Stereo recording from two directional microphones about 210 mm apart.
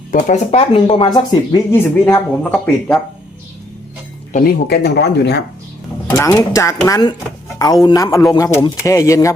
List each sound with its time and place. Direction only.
0.1 s speech: 35° left (ahead or behind); by 3.0 s 5° left (ahead or behind)
4.3 s speech: 40° left (ahead or behind)
6.1 s speech: 15° left (ahead or behind)